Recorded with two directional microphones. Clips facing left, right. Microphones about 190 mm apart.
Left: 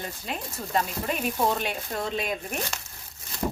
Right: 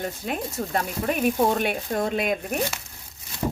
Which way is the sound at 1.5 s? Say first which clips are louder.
Right 6 dB; 55° right (ahead or behind).